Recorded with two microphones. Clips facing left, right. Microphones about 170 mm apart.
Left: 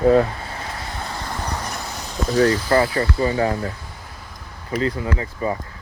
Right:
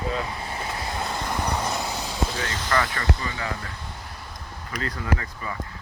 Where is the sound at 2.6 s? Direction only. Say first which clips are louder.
Left 7 dB; 35° left (ahead or behind).